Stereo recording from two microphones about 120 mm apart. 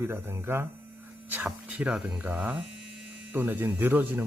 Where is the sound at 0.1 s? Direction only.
20° right (ahead or behind).